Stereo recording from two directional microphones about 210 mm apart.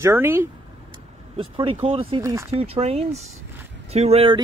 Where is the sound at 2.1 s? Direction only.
15° right (ahead or behind).